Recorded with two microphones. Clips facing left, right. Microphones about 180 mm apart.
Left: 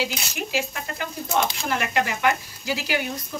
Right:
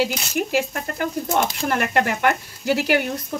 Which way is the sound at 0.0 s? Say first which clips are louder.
Right 6 dB; 55° right (ahead or behind).